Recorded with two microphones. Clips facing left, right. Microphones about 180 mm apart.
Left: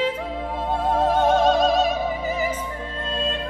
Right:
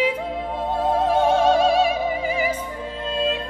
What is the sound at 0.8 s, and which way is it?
Music, 10° right (ahead or behind).